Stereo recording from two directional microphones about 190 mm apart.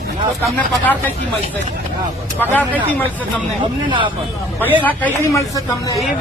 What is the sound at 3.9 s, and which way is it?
Speech, 25° right (ahead or behind).